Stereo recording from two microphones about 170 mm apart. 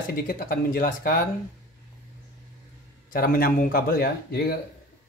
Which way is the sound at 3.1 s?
55° left (ahead or behind).